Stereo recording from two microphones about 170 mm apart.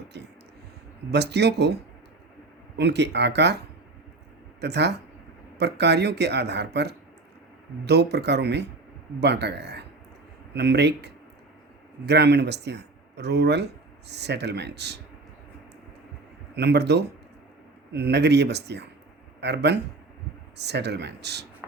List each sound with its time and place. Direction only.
1.1 s speech: 75° right (ahead or behind)
4.6 s speech: 80° right
16.6 s speech: 80° right